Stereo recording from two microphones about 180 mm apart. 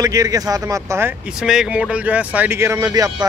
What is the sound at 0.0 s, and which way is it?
Speech, 20° right (ahead or behind).